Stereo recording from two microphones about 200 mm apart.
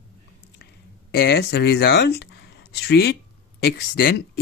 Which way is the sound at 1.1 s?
55° left (ahead or behind).